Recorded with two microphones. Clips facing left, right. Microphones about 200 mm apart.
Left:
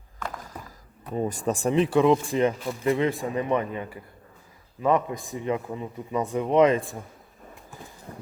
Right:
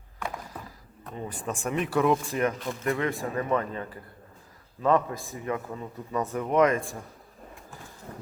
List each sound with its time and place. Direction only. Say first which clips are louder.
1.1 s a man's voice: left 8 dB; 40° left (ahead or behind); by 6.5 s 15° left (ahead or behind)
6.5 s speech: left 3 dB; 25° left (ahead or behind)